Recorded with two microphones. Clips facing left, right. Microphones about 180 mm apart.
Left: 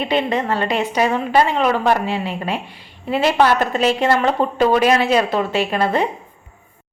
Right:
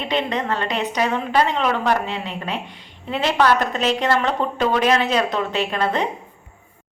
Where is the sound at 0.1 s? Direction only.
10° left (ahead or behind).